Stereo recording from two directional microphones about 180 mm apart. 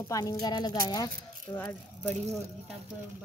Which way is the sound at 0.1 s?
20° left (ahead or behind).